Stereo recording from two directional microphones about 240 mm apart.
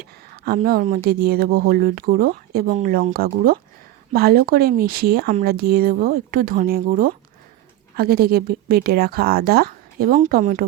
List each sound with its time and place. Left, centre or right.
0.0 s speech: right